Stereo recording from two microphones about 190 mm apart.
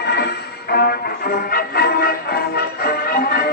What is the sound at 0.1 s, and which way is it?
Music, 55° left (ahead or behind).